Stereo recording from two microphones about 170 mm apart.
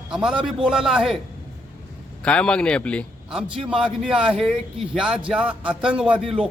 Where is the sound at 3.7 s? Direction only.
5° right (ahead or behind).